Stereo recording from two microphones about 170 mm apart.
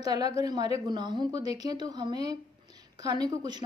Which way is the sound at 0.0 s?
25° right (ahead or behind).